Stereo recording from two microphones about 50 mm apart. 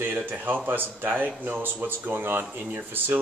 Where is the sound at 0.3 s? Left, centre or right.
Right.